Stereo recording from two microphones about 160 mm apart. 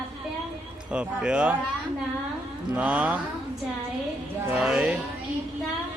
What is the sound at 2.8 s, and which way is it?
Speech, 10° right (ahead or behind).